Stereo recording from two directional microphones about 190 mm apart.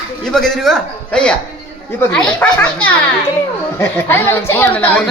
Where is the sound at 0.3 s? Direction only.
5° left (ahead or behind).